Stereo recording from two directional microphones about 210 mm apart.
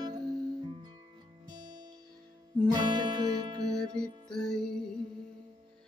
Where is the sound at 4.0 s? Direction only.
5° left (ahead or behind).